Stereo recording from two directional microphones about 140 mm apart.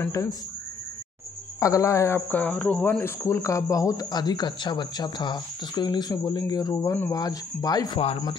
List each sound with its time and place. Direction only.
0.0 s speech: 20° left (ahead or behind)
1.6 s speech: 25° left (ahead or behind)